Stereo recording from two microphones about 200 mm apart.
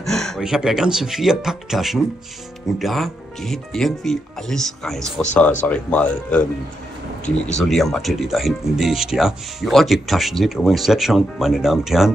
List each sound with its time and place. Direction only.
0.0 s speech: centre (ahead or behind)
7.6 s speech: centre (ahead or behind)